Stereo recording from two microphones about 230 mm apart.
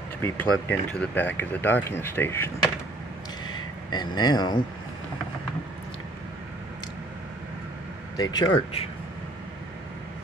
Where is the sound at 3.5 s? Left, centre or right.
Centre.